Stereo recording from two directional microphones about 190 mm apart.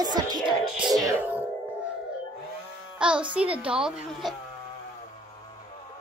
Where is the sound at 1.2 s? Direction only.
10° right (ahead or behind).